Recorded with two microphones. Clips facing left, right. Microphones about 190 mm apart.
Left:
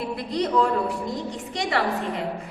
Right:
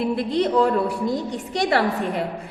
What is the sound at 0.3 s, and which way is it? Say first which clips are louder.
Speech: right 2 dB; 30° right (ahead or behind).